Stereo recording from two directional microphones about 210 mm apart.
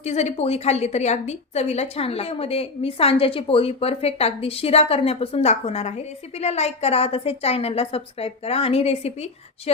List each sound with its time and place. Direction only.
0.0 s a woman's voice: 30° left (ahead or behind)